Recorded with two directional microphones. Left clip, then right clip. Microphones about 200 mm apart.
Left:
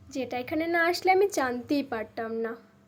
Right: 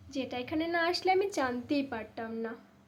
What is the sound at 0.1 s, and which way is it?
A woman's voice, 20° left (ahead or behind).